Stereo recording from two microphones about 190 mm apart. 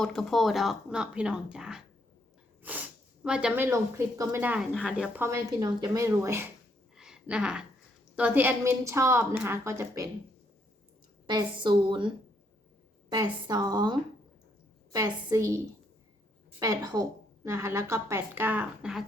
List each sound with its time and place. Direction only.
0.0 s speech: centre (ahead or behind); by 6.5 s 15° right (ahead or behind)
6.9 s a sound: 5° right (ahead or behind)
8.1 s speech: 10° right (ahead or behind)
11.3 s a woman's voice: 25° right (ahead or behind)
14.9 s a woman's voice: 20° right (ahead or behind)
16.6 s speech: 20° right (ahead or behind); by 19.0 s 5° right (ahead or behind)